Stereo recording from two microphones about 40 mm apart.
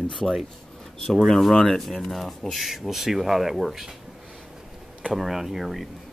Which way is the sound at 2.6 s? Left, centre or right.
Centre.